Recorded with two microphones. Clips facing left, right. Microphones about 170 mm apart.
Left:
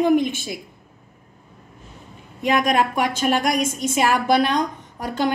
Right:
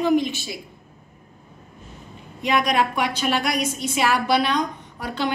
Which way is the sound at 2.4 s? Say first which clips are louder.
Left 2 dB; 45° left (ahead or behind).